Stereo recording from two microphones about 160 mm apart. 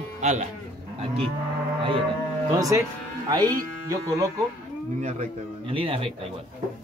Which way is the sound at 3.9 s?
20° right (ahead or behind).